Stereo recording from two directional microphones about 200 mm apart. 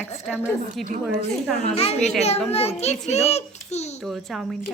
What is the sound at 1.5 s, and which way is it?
A child's voice, 30° left (ahead or behind).